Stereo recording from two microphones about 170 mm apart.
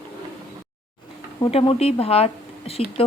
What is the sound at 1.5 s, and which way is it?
Speech, 35° left (ahead or behind).